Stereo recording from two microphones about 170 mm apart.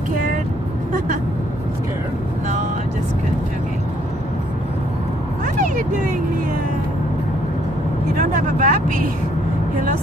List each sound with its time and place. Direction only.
8.4 s speech: 50° right (ahead or behind)